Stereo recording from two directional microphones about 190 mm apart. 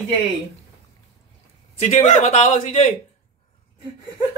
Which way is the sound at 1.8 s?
40° left (ahead or behind).